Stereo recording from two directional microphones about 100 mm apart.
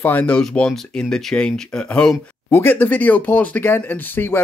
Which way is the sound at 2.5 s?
20° left (ahead or behind).